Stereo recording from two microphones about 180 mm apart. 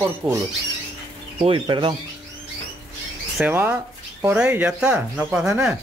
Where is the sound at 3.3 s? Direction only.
10° right (ahead or behind).